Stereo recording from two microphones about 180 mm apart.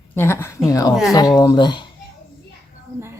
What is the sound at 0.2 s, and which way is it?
Speech, 15° left (ahead or behind).